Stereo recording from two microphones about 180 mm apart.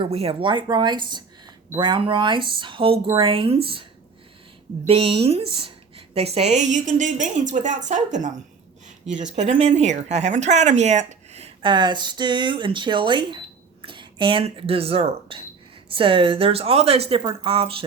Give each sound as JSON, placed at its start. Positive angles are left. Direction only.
{"t": 0.0, "sound": "speech", "side_deg": -35}
{"t": 4.9, "sound": "a woman's voice", "side_deg": -30}
{"t": 9.5, "sound": "speech", "side_deg": -40}